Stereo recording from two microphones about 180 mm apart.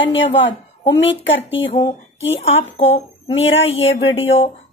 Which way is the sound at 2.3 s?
35° left (ahead or behind).